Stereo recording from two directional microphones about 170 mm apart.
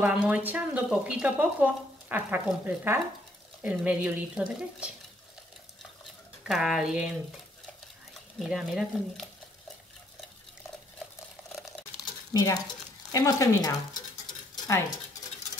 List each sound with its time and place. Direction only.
0.0 s speech: 5° right (ahead or behind)
6.4 s speech: centre (ahead or behind)
8.4 s speech: centre (ahead or behind)
12.3 s speech: 20° left (ahead or behind)
14.5 s a sound: 20° left (ahead or behind)